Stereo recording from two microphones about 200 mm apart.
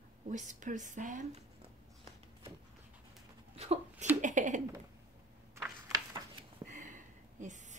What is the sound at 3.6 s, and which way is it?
A woman's voice, 30° right (ahead or behind).